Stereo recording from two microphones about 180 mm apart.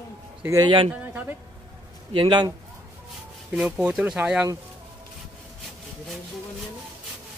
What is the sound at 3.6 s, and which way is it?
Speech, 5° right (ahead or behind).